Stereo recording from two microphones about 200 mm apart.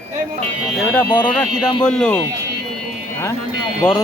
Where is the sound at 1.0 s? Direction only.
20° left (ahead or behind).